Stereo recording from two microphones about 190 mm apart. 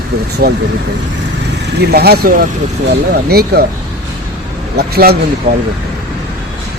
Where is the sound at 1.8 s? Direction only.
55° right (ahead or behind).